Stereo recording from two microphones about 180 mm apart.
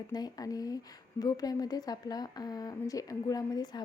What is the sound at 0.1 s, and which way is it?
A woman's voice, 20° left (ahead or behind).